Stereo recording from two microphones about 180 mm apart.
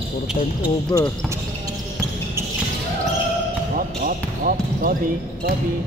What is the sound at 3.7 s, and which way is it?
Basketball bounce, 50° right (ahead or behind).